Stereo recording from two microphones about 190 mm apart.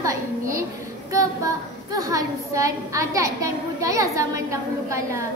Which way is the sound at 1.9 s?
20° right (ahead or behind).